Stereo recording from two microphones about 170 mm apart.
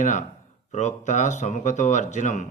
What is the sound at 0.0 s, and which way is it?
Speech, 45° left (ahead or behind).